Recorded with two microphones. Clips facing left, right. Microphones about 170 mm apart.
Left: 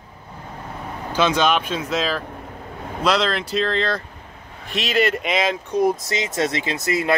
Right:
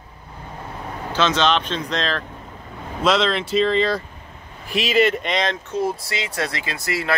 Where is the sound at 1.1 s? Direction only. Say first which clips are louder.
Left 1 dB; 10° left (ahead or behind).